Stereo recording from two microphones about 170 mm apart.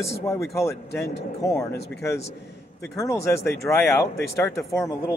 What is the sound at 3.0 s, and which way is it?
Speech, 15° left (ahead or behind).